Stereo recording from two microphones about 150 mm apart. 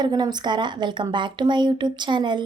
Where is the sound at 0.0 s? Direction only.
30° right (ahead or behind).